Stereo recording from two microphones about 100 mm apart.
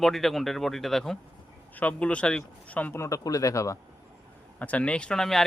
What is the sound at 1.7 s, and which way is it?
Speech, 15° left (ahead or behind).